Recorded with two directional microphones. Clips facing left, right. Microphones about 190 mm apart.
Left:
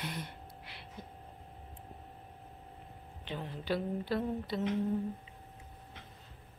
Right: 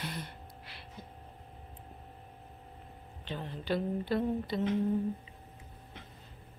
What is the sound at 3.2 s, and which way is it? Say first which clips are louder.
Speech: right 1 dB; 10° left (ahead or behind).